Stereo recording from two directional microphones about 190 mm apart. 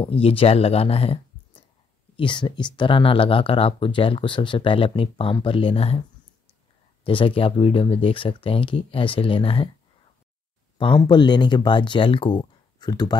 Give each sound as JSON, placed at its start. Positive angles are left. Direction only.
{"t": 0.0, "sound": "speech", "side_deg": 30}
{"t": 7.1, "sound": "speech", "side_deg": 25}
{"t": 10.8, "sound": "speech", "side_deg": 25}